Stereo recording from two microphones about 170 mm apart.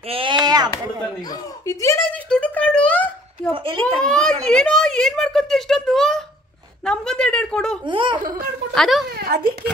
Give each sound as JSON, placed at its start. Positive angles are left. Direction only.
{"t": 0.1, "sound": "chop", "side_deg": -30}
{"t": 1.7, "sound": "speech", "side_deg": 15}
{"t": 2.2, "sound": "a sound", "side_deg": 5}
{"t": 3.4, "sound": "a child's voice", "side_deg": 5}
{"t": 7.9, "sound": "baby laughter", "side_deg": -30}
{"t": 8.7, "sound": "a child's voice", "side_deg": 0}